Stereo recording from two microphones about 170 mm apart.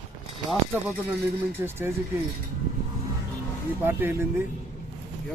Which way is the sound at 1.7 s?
15° right (ahead or behind).